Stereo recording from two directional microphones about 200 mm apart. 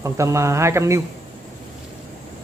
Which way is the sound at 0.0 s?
15° right (ahead or behind).